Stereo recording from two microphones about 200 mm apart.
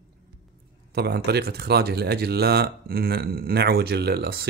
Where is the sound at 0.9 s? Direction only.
55° right (ahead or behind).